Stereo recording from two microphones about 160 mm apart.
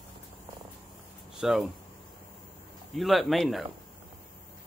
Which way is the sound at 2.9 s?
Centre (ahead or behind).